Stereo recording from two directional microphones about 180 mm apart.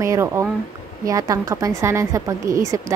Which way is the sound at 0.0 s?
15° right (ahead or behind).